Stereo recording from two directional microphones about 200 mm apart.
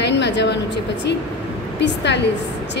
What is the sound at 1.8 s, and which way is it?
Speech, 60° left (ahead or behind).